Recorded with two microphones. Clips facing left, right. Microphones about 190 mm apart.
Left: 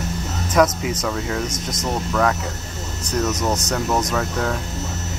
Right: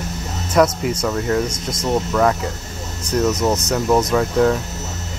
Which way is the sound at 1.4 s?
20° left (ahead or behind).